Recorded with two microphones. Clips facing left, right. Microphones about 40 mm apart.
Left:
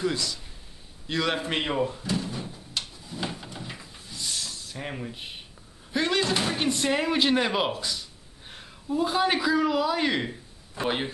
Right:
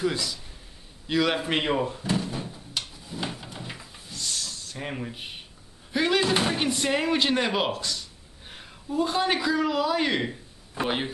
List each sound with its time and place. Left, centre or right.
0.0 s a man's voice: centre
2.5 s drawer open or close: centre
4.1 s hiss: left
4.7 s speech: centre
5.9 s a sound: centre
6.5 s speech: centre
8.5 s a man's voice: centre